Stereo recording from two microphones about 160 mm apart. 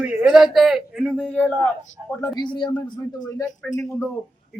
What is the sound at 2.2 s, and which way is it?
A man's voice, 25° left (ahead or behind).